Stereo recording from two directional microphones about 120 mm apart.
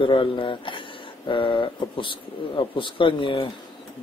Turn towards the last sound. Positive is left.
turn(degrees=45)  # may be behind; listen again after turning